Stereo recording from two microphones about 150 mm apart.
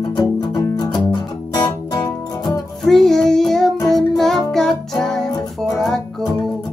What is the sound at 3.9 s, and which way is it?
Music, centre (ahead or behind).